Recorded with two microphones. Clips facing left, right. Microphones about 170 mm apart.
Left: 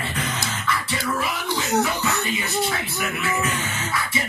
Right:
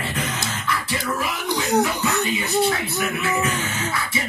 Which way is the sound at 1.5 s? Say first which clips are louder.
Right 3 dB; 15° right (ahead or behind).